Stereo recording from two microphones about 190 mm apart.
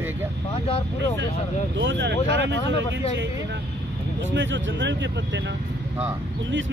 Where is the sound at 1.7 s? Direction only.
75° right (ahead or behind).